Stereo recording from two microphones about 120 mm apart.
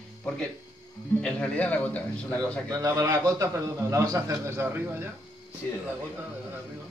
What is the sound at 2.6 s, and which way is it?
A man's voice, 25° right (ahead or behind).